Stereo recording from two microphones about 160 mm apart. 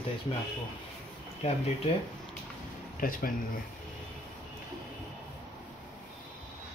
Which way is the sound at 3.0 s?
60° left (ahead or behind).